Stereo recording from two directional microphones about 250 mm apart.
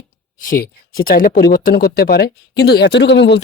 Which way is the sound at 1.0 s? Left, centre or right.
Left.